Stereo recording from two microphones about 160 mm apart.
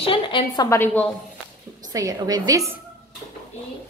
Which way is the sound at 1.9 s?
20° right (ahead or behind).